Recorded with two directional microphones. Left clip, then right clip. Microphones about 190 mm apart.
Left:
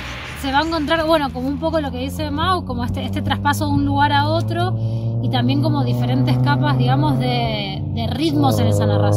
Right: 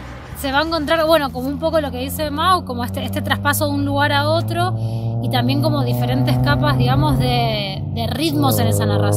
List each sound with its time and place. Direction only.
0.5 s speech: 15° right (ahead or behind)